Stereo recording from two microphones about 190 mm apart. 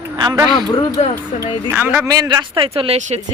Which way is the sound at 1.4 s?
10° right (ahead or behind).